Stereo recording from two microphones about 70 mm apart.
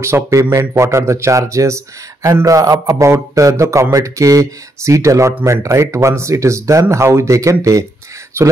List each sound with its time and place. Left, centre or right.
0.0 s a man's voice: right
3.1 s speech: right